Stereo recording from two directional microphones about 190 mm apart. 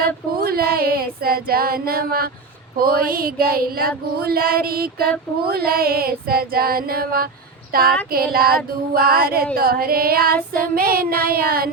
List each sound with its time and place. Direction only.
0.3 s female singing: 50° right (ahead or behind)